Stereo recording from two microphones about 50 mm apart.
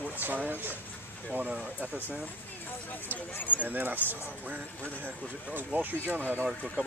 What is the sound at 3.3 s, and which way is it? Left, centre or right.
Speech, left.